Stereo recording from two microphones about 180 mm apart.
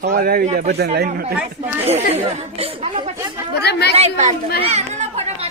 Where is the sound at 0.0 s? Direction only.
55° right (ahead or behind).